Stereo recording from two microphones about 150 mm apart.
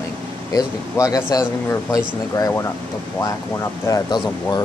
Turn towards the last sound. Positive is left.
turn(degrees=20)  # may be behind; listen again after turning